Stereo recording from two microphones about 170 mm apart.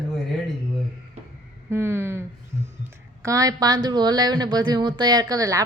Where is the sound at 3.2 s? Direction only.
20° right (ahead or behind).